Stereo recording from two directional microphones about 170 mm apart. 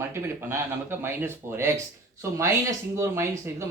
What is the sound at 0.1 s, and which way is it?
Speech, 15° right (ahead or behind).